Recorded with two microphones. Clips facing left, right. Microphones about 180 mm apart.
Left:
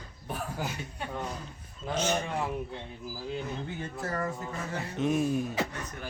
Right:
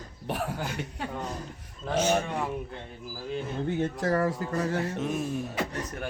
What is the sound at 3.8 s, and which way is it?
Speech, 90° right.